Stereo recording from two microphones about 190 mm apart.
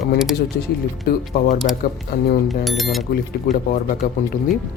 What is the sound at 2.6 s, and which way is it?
Speech, centre (ahead or behind).